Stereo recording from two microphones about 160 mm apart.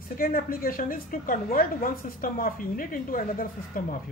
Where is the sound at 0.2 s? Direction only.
65° left (ahead or behind).